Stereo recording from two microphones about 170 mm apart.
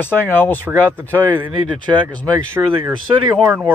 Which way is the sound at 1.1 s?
15° right (ahead or behind).